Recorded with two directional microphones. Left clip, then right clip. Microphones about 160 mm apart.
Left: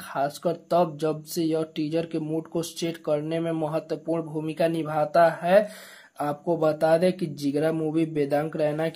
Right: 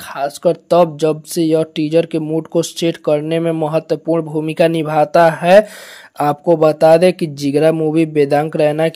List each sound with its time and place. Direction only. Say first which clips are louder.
0.1 s speech: right 10 dB; 40° right (ahead or behind)